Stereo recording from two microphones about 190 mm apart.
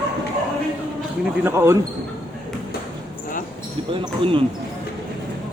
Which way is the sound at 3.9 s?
25° right (ahead or behind).